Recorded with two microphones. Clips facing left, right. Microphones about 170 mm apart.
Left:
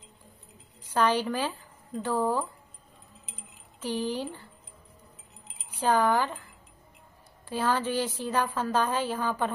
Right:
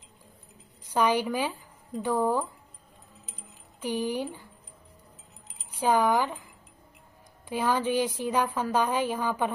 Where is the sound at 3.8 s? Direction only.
10° right (ahead or behind).